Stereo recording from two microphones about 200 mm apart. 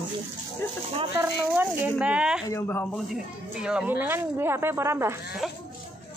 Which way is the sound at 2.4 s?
15° left (ahead or behind).